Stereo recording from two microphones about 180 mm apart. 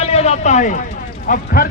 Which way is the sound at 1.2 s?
50° left (ahead or behind).